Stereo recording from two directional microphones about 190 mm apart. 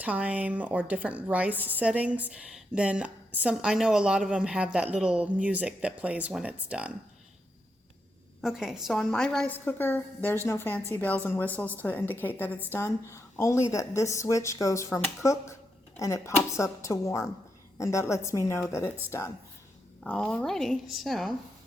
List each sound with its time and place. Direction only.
0.0 s a woman's voice: 5° right (ahead or behind)
8.4 s a woman's voice: 5° right (ahead or behind); by 18.9 s 15° left (ahead or behind)
20.1 s a woman's voice: 5° left (ahead or behind)